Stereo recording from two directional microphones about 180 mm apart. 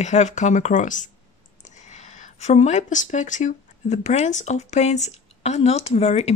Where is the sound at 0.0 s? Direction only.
40° left (ahead or behind).